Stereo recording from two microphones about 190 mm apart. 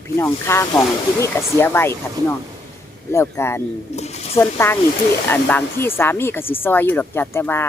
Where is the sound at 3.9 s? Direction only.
35° left (ahead or behind).